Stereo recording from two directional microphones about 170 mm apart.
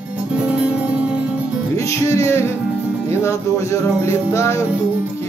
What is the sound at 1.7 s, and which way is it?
Music, 15° left (ahead or behind).